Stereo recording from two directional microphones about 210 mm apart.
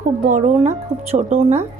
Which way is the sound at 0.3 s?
35° right (ahead or behind).